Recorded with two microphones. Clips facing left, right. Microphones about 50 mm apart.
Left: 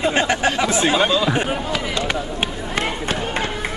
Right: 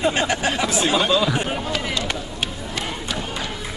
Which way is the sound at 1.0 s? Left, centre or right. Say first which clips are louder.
Left 2 dB; centre.